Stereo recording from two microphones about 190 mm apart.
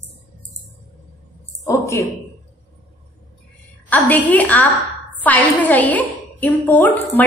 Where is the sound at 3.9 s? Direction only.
10° left (ahead or behind).